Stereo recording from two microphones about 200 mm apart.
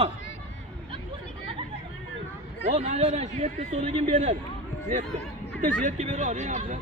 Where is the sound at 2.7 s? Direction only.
35° right (ahead or behind).